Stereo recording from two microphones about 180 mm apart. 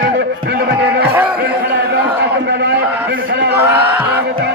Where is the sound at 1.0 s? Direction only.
10° right (ahead or behind).